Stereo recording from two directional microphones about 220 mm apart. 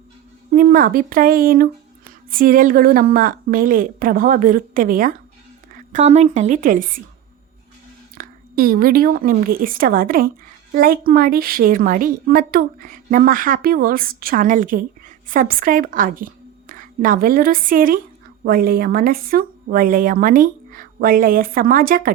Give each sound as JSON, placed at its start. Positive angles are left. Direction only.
{"t": 0.5, "sound": "a woman's voice", "side_deg": -40}
{"t": 8.2, "sound": "a woman's voice", "side_deg": -40}